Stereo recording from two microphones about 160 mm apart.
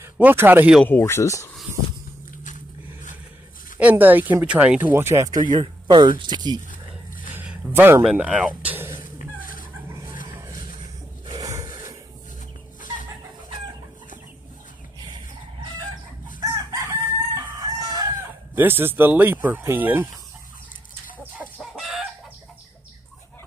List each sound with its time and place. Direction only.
0.0 s speech: 15° right (ahead or behind)
0.8 s speech: 15° left (ahead or behind)
3.8 s speech: 10° right (ahead or behind)
7.3 s a sound: 10° right (ahead or behind)
8.0 s speech: 5° right (ahead or behind)
9.0 s a sound: 60° left (ahead or behind)
9.8 s vehicle: 15° right (ahead or behind)
11.2 s a sound: 25° right (ahead or behind)
16.3 s chicken: 25° right (ahead or behind)
18.5 s speech: 15° right (ahead or behind)
21.2 s chicken: 5° right (ahead or behind)